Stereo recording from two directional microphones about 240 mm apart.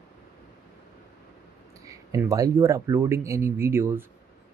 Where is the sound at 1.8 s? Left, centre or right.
Centre.